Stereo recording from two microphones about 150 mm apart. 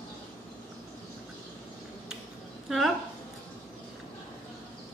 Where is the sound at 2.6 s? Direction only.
Centre (ahead or behind).